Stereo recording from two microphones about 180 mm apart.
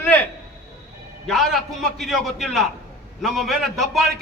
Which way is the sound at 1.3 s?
Centre (ahead or behind).